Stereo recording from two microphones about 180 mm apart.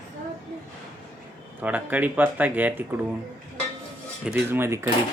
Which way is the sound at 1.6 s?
10° right (ahead or behind).